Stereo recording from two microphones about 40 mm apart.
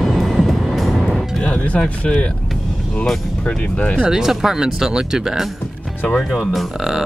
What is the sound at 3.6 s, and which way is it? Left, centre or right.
Speech, left.